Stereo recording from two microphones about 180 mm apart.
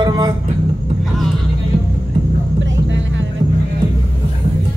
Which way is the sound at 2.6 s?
90° right.